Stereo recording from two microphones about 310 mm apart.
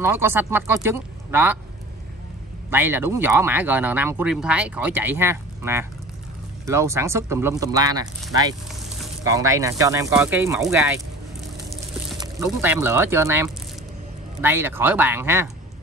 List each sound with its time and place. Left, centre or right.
0.0 s speech: centre
2.7 s speech: centre
8.3 s sizzle: centre
9.2 s speech: centre
12.2 s speech: centre